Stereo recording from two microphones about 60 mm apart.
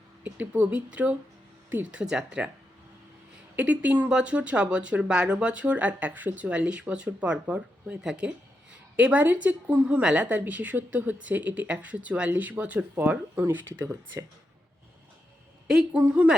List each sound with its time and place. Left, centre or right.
0.3 s speech: right
3.5 s speech: right
9.0 s speech: right
15.6 s speech: centre
16.0 s speech: right